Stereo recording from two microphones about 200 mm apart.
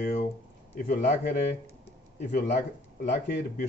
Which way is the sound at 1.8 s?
40° left (ahead or behind).